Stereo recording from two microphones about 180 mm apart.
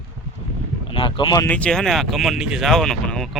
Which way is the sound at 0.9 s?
30° left (ahead or behind).